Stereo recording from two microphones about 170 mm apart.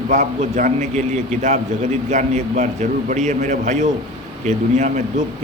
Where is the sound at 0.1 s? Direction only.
45° right (ahead or behind).